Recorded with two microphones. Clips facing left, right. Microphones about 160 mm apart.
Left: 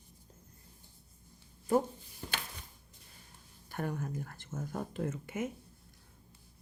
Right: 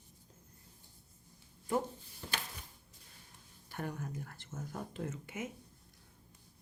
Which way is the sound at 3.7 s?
50° left (ahead or behind).